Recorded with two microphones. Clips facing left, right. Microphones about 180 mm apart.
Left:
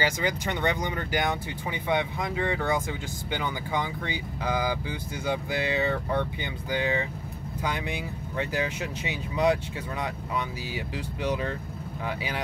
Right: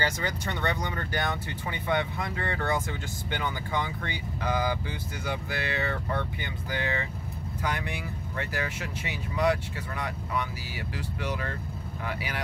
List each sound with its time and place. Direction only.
0.0 s speech: 15° left (ahead or behind)